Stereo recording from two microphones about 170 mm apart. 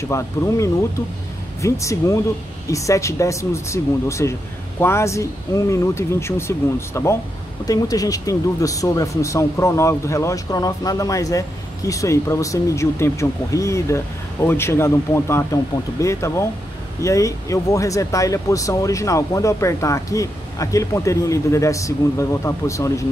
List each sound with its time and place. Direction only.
0.1 s speech: 15° left (ahead or behind)